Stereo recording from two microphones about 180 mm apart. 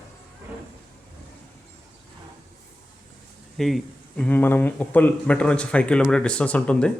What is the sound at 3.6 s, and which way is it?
Speech, centre (ahead or behind).